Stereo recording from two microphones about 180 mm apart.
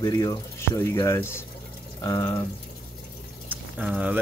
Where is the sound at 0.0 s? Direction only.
20° left (ahead or behind).